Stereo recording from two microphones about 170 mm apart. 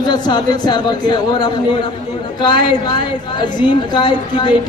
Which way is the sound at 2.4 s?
25° left (ahead or behind).